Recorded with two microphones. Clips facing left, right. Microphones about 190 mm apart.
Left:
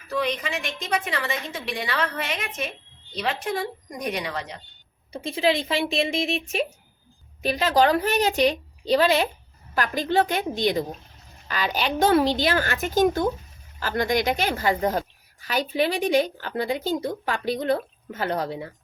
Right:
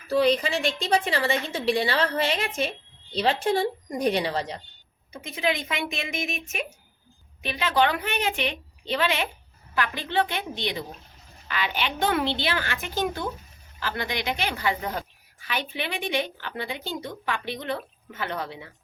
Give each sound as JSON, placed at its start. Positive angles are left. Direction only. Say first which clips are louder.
{"t": 0.1, "sound": "a woman's voice", "louder": "right 5 dB", "side_deg": -35}
{"t": 5.1, "sound": "a woman's voice", "louder": "left 5 dB", "side_deg": 30}